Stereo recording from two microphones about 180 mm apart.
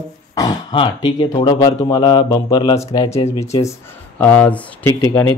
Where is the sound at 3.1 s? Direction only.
35° left (ahead or behind).